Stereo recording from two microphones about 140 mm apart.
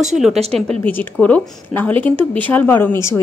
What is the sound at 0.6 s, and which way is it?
A woman's voice, 10° left (ahead or behind).